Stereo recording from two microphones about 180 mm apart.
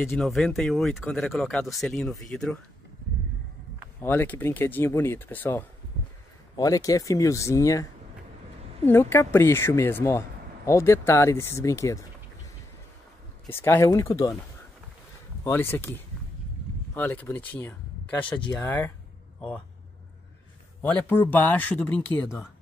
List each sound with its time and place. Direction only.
0.1 s speech: centre (ahead or behind)
4.0 s speech: 10° left (ahead or behind)
8.8 s speech: 10° left (ahead or behind)
13.5 s speech: 15° left (ahead or behind)
15.4 s speech: 10° left (ahead or behind)
16.9 s speech: 10° left (ahead or behind)
20.8 s speech: 10° left (ahead or behind)